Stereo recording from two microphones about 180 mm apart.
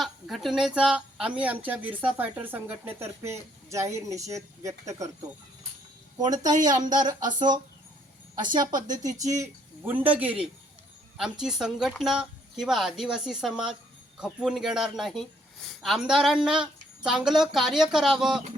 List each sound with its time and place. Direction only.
0.0 s speech: centre (ahead or behind); by 5.0 s 20° right (ahead or behind)
6.1 s speech: 20° right (ahead or behind); by 18.4 s 5° right (ahead or behind)